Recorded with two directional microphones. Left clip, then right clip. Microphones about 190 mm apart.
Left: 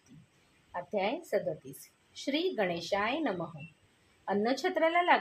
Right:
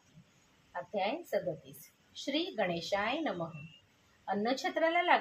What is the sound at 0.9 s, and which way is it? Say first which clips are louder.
A woman's voice: left 2 dB; 40° left (ahead or behind).